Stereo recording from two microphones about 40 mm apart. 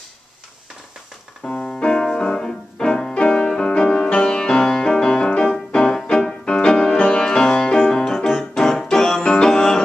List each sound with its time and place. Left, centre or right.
1.4 s music: centre
8.0 s music: centre
9.2 s music: left
9.5 s music: centre